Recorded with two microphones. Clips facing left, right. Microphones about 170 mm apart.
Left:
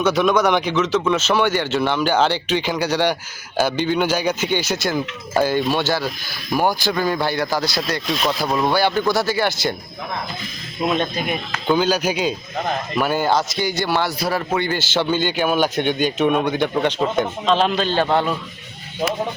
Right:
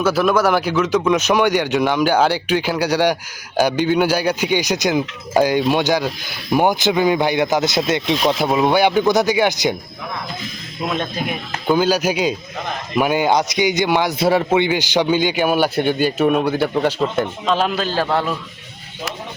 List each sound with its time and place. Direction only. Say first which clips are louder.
0.0 s speech: right 1 dB; 5° right (ahead or behind)
10.9 s speech: left 1 dB; centre (ahead or behind); by 14.4 s 25° right (ahead or behind)
14.5 s speech: right 4 dB; 15° right (ahead or behind)